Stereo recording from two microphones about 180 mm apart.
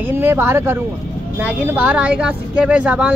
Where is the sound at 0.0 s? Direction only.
10° right (ahead or behind).